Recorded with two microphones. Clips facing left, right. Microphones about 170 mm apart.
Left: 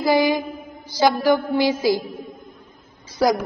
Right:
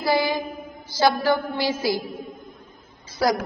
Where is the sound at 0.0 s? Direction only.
15° left (ahead or behind).